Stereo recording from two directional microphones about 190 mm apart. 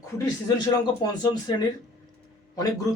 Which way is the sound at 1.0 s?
20° left (ahead or behind).